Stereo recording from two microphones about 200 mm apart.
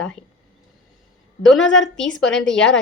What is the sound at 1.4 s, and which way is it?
A woman's voice, 5° left (ahead or behind).